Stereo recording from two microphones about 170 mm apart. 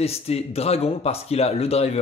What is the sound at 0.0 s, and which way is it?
Speech, 35° left (ahead or behind).